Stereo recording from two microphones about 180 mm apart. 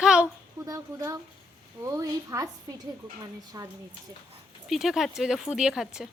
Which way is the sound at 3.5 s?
20° right (ahead or behind).